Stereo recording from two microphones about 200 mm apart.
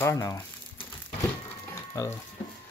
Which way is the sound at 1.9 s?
15° left (ahead or behind).